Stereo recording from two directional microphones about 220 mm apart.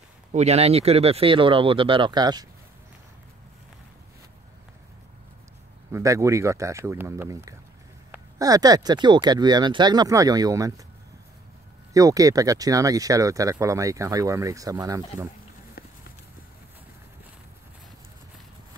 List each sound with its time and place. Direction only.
0.3 s speech: 30° right (ahead or behind)
5.9 s speech: 10° right (ahead or behind)
11.9 s speech: 15° right (ahead or behind)
15.8 s run: 45° left (ahead or behind)